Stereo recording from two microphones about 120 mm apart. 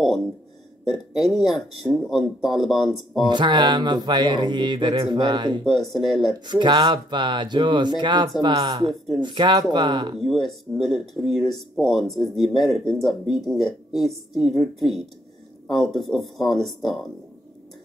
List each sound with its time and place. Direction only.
1.2 s speech: centre (ahead or behind)
3.3 s speech: 40° right (ahead or behind)
5.7 s speech: centre (ahead or behind)
6.4 s speech: 40° right (ahead or behind)
10.1 s speech: centre (ahead or behind)